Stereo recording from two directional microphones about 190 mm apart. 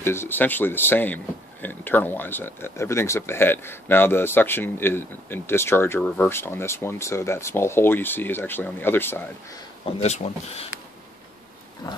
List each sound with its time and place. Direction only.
0.0 s speech: 10° left (ahead or behind)
9.8 s speech: 30° left (ahead or behind)